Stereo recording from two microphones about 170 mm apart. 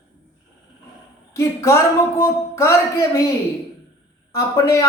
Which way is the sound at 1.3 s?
15° left (ahead or behind).